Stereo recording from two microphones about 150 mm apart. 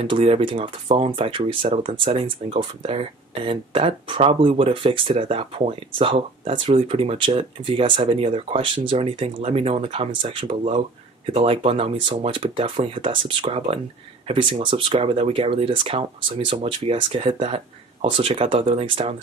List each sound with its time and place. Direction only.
0.0 s speech: 35° right (ahead or behind)